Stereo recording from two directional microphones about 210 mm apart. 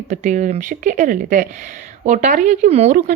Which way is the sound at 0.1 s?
35° right (ahead or behind).